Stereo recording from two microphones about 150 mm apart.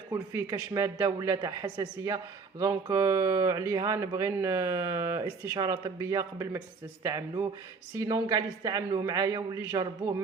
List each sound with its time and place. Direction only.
0.1 s speech: 20° right (ahead or behind)